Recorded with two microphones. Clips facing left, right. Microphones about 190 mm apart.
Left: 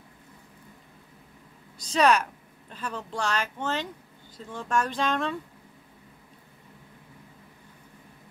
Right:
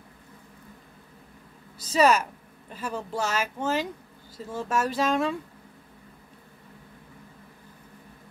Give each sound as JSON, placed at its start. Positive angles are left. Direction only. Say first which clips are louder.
{"t": 1.8, "sound": "speech", "louder": "right 1 dB", "side_deg": -5}